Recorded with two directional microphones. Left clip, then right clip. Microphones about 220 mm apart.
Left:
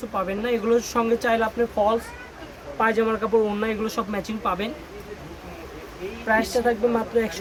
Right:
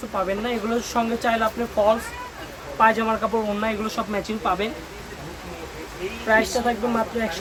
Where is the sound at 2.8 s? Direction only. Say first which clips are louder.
Right 3 dB; 20° left (ahead or behind).